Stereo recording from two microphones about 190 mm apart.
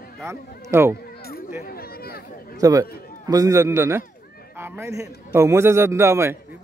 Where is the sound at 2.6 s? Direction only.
15° right (ahead or behind).